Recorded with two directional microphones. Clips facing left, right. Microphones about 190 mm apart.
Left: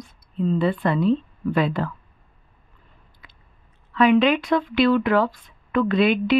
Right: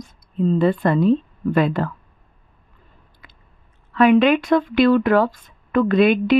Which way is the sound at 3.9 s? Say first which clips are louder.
Right 3 dB; 50° right (ahead or behind).